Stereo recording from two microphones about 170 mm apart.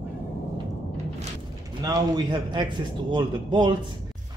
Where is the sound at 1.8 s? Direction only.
20° right (ahead or behind).